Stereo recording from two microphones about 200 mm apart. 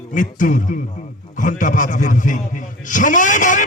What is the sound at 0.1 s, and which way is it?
A man's voice, 40° left (ahead or behind).